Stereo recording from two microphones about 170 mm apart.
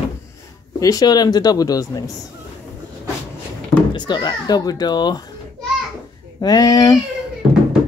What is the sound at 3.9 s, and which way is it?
Speech, 25° left (ahead or behind).